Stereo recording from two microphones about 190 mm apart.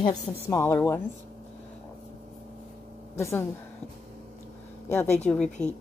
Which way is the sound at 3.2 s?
15° left (ahead or behind).